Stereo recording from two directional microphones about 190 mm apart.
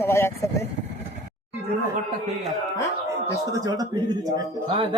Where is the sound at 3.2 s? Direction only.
20° right (ahead or behind).